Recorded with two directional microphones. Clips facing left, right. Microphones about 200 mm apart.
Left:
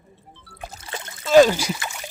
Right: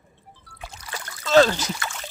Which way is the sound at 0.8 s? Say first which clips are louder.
Even; 25° left (ahead or behind).